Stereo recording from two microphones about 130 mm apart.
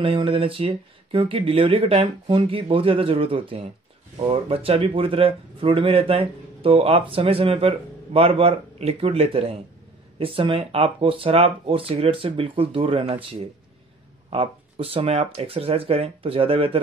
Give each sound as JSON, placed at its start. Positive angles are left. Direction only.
{"t": 0.0, "sound": "speech", "side_deg": -45}